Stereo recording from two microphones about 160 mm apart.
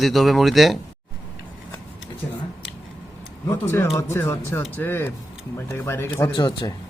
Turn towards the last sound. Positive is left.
turn(degrees=30)  # may be behind; listen again after turning